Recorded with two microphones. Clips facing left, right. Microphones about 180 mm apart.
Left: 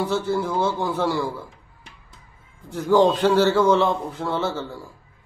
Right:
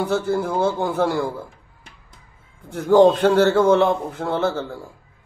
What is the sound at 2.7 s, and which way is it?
A man's voice, 55° right (ahead or behind).